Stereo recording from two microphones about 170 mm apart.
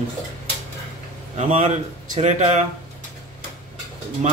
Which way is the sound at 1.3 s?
40° right (ahead or behind).